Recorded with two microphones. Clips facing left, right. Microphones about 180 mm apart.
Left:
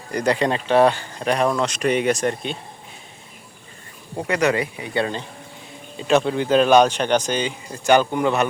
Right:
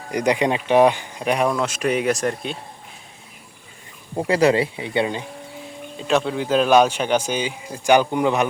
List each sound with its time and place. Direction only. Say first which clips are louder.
0.1 s speech: right 1 dB; 15° right (ahead or behind)
4.3 s speech: right 3 dB; 30° right (ahead or behind)
5.6 s speech: left 2 dB; centre (ahead or behind); by 8.4 s 15° right (ahead or behind)